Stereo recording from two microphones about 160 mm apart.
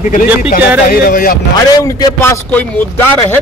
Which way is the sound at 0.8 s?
65° left (ahead or behind).